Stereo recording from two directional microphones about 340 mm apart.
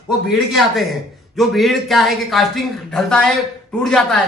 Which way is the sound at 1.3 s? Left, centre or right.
Centre.